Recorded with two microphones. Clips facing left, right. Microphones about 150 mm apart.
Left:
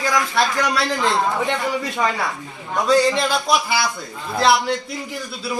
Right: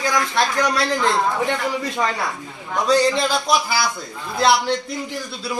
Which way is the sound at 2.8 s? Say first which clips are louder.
Left 1 dB; 5° left (ahead or behind).